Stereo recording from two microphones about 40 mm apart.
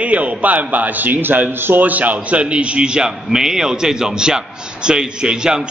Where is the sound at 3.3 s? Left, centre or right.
Centre.